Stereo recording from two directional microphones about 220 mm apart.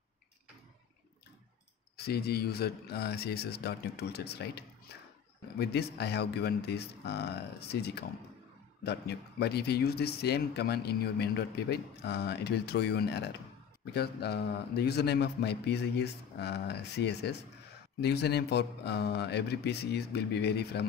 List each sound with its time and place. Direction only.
2.0 s speech: 45° left (ahead or behind)